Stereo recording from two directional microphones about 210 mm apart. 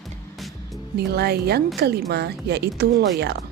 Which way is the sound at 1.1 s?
50° right (ahead or behind).